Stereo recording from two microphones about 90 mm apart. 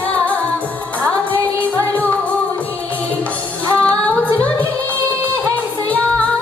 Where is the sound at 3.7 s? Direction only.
15° left (ahead or behind).